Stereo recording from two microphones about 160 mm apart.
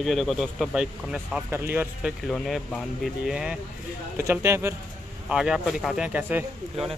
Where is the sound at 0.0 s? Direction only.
Centre (ahead or behind).